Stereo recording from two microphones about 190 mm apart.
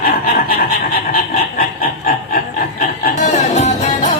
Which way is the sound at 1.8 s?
50° left (ahead or behind).